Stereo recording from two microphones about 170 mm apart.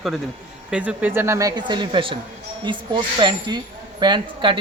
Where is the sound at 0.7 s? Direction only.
10° right (ahead or behind).